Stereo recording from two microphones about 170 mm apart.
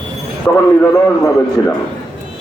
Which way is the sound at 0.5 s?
20° left (ahead or behind).